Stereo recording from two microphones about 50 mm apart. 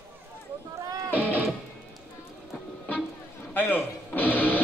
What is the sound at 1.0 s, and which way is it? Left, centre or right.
Music, right.